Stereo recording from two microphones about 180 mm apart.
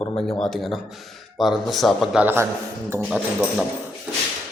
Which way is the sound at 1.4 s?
Centre (ahead or behind).